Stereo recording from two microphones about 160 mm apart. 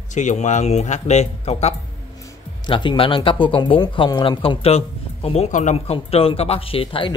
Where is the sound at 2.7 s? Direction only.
30° left (ahead or behind).